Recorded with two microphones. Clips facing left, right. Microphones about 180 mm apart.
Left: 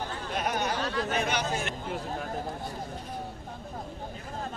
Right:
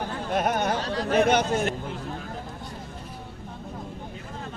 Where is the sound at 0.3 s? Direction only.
50° right (ahead or behind).